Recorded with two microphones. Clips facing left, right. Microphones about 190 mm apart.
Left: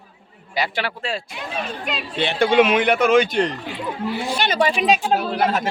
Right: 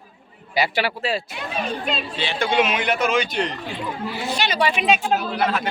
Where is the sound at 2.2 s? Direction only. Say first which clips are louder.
Left 6 dB; 55° left (ahead or behind).